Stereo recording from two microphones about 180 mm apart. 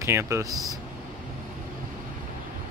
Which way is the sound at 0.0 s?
15° right (ahead or behind).